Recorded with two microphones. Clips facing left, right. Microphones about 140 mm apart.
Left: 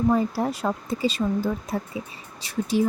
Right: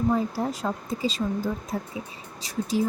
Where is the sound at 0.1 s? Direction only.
70° left (ahead or behind).